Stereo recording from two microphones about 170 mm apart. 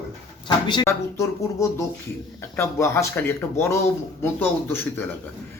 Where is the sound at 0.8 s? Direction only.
15° left (ahead or behind).